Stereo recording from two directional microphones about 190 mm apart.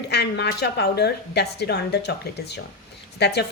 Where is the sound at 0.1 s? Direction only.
60° left (ahead or behind).